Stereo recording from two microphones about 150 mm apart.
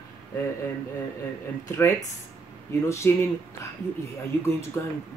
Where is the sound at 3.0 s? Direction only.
15° left (ahead or behind).